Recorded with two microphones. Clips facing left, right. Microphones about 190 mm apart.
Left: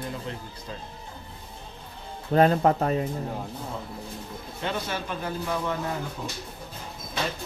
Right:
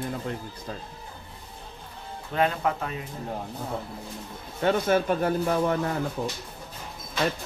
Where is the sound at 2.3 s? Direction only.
40° left (ahead or behind).